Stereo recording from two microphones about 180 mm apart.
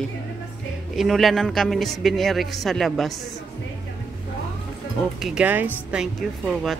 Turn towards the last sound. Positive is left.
turn(degrees=0)  # may be behind; listen again after turning